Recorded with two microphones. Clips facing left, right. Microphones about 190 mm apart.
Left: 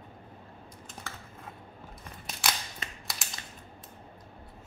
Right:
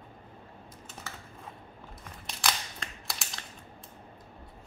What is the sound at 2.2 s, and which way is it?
Scissors, 5° left (ahead or behind).